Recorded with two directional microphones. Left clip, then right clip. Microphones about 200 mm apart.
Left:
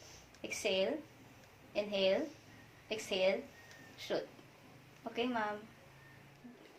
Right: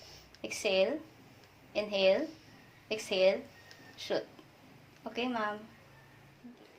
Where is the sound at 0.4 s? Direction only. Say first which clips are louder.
Right 5 dB; 35° right (ahead or behind).